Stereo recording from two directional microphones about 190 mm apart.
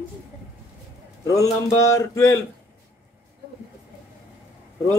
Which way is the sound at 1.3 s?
15° left (ahead or behind).